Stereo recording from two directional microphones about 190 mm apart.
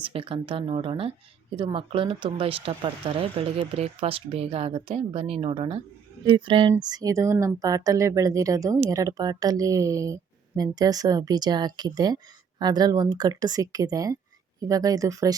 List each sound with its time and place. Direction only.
0.0 s speech: 30° right (ahead or behind)